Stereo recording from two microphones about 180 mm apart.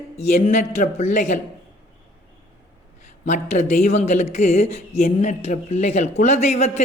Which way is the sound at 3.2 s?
40° left (ahead or behind).